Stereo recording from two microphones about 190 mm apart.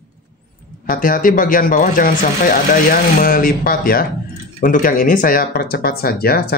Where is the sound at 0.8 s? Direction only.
45° left (ahead or behind).